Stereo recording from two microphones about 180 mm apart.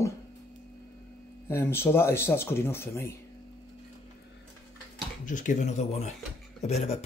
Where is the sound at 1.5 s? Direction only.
15° left (ahead or behind).